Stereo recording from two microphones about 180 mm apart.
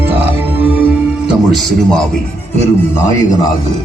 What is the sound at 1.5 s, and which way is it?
Speech, centre (ahead or behind).